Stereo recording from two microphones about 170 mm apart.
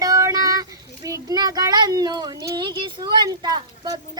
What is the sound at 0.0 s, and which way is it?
Speech, 20° right (ahead or behind).